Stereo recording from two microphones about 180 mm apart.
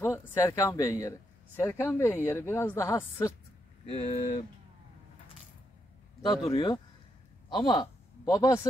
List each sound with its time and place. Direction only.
0.0 s speech: 15° left (ahead or behind)
3.9 s speech: 35° left (ahead or behind)
6.4 s a man's voice: 25° left (ahead or behind)